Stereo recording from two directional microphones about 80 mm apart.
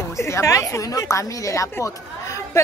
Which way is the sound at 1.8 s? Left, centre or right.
Left.